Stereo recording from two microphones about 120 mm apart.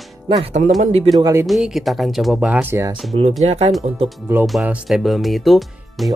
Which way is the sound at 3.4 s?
65° right (ahead or behind).